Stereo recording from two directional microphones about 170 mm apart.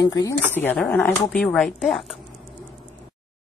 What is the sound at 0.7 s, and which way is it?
Speech, 10° left (ahead or behind).